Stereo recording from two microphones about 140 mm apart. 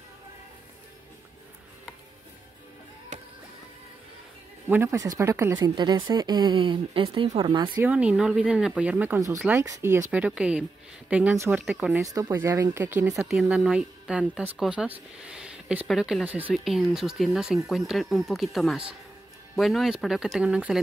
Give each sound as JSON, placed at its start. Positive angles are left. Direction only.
{"t": 4.6, "sound": "speech", "side_deg": -15}
{"t": 5.6, "sound": "speech", "side_deg": -30}
{"t": 7.7, "sound": "speech", "side_deg": -10}
{"t": 9.5, "sound": "speech", "side_deg": -20}
{"t": 10.1, "sound": "speech", "side_deg": -10}
{"t": 12.1, "sound": "speech", "side_deg": -25}
{"t": 13.1, "sound": "speech", "side_deg": 0}